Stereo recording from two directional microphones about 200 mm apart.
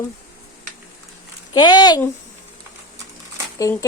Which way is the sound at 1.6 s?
20° left (ahead or behind).